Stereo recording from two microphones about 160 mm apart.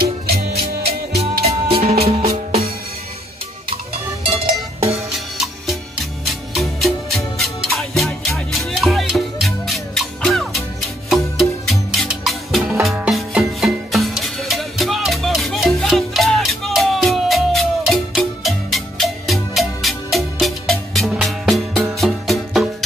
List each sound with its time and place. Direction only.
0.5 s music: 40° right (ahead or behind)
4.3 s music: 40° right (ahead or behind)
6.5 s music: centre (ahead or behind)